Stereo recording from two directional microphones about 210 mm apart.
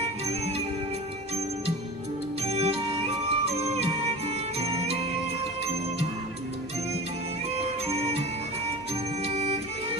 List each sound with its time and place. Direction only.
2.4 s music: 30° right (ahead or behind)
7.5 s music: 30° right (ahead or behind)